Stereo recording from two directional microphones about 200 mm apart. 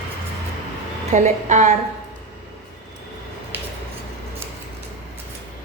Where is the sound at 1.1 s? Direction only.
35° right (ahead or behind).